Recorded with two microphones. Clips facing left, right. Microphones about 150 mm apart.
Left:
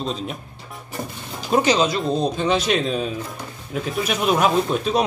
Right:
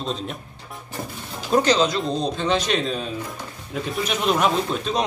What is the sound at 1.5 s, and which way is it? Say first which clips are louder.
A man's voice: even; 10° left (ahead or behind).